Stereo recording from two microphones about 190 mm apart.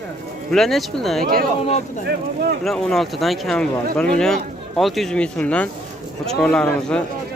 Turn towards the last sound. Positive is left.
turn(degrees=5)  # may be behind; listen again after turning